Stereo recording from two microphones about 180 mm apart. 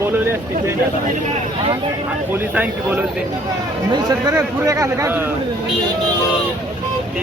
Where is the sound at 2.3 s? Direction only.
10° right (ahead or behind).